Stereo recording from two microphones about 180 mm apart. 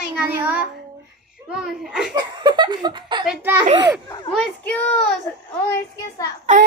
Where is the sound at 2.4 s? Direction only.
25° right (ahead or behind).